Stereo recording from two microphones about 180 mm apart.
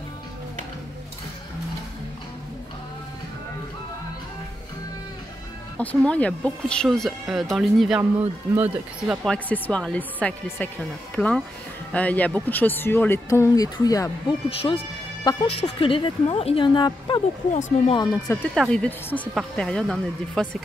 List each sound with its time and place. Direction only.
5.8 s speech: 10° left (ahead or behind)
11.1 s speech: centre (ahead or behind); by 17.2 s 25° left (ahead or behind)
17.5 s speech: 40° left (ahead or behind)
17.9 s speech: 20° left (ahead or behind)
18.5 s speech: centre (ahead or behind)